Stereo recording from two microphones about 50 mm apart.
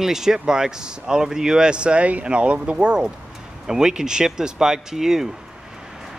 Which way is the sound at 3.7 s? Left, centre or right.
Centre.